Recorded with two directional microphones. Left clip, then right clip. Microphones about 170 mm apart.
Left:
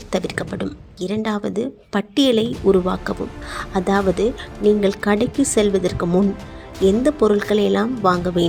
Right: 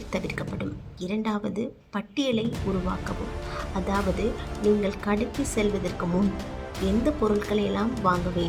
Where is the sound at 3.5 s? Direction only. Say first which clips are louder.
Left 9 dB; 40° left (ahead or behind).